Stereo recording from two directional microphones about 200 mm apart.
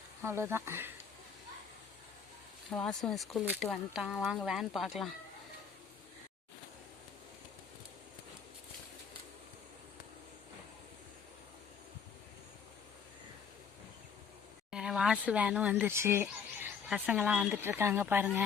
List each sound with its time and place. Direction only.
0.2 s speech: 10° right (ahead or behind)
2.6 s speech: 5° left (ahead or behind)
14.7 s a sound: 5° right (ahead or behind)
15.3 s speech: 5° right (ahead or behind)